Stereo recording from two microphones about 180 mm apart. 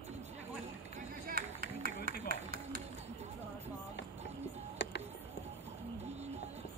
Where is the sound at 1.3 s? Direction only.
55° right (ahead or behind).